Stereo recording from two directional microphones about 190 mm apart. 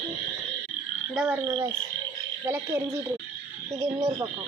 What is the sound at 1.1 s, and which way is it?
Frog, 5° right (ahead or behind).